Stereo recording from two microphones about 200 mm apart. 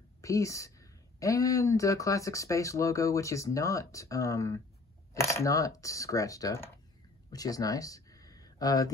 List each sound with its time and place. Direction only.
0.2 s speech: 15° left (ahead or behind)